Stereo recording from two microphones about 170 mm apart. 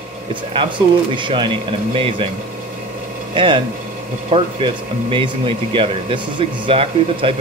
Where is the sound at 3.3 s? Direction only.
30° right (ahead or behind).